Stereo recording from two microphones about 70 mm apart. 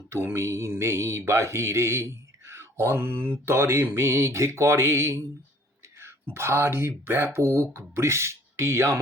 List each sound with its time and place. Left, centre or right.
0.3 s speech: right
2.5 s mantra: right
3.4 s speech: right
6.3 s speech: right